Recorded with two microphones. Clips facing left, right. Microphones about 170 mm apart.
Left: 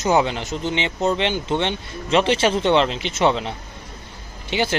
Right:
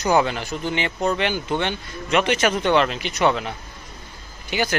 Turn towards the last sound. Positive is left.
turn(degrees=25)  # may be behind; listen again after turning